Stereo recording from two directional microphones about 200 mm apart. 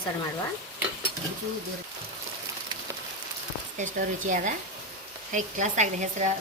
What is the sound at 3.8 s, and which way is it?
A woman's voice, 40° right (ahead or behind).